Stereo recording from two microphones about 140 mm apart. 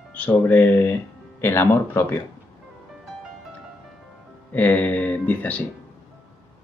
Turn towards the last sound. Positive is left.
turn(degrees=10)  # may be behind; listen again after turning